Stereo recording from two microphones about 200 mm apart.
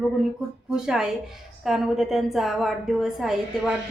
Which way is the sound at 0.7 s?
5° right (ahead or behind).